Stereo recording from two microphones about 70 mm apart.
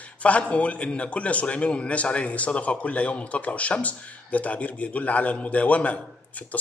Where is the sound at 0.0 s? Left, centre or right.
Centre.